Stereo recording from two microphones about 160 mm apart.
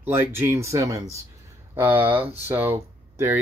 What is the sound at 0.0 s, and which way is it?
Speech, 15° right (ahead or behind).